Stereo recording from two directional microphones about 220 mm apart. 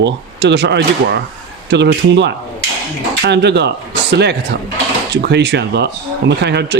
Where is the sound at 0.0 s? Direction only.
50° right (ahead or behind).